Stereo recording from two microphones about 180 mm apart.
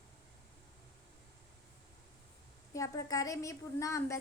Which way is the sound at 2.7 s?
20° left (ahead or behind).